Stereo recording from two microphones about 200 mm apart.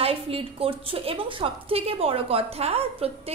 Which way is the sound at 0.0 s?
30° right (ahead or behind).